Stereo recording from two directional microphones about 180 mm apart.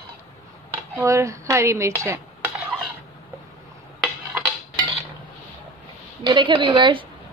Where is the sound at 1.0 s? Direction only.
15° right (ahead or behind).